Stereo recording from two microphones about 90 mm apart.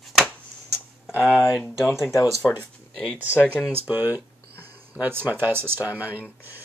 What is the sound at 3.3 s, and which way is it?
Speech, 20° left (ahead or behind).